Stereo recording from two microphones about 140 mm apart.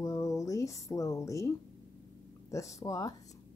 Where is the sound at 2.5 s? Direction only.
20° left (ahead or behind).